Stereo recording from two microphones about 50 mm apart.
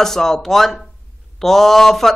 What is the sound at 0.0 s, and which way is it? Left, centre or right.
Speech, centre.